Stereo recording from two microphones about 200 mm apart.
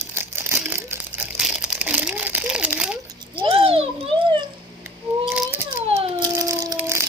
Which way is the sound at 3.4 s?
30° right (ahead or behind).